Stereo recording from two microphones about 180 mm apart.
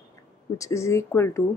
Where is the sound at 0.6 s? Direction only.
15° left (ahead or behind).